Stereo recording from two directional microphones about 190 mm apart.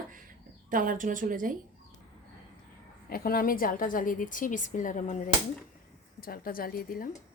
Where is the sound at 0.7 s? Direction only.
45° right (ahead or behind).